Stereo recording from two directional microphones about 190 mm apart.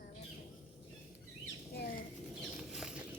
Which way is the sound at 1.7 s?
55° left (ahead or behind).